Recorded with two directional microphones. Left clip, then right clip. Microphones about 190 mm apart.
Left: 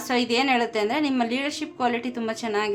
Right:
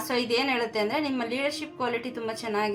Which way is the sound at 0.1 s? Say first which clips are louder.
Left 4 dB; 40° left (ahead or behind).